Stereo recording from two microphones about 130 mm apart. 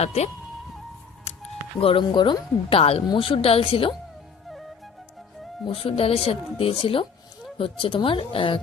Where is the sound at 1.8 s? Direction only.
40° left (ahead or behind).